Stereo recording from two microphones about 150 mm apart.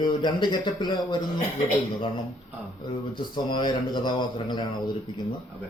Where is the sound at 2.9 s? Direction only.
30° left (ahead or behind).